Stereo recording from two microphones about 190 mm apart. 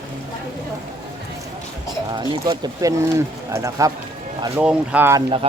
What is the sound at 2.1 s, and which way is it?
Speech, 20° right (ahead or behind).